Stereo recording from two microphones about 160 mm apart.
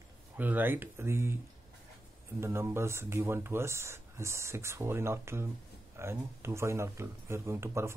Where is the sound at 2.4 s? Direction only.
15° right (ahead or behind).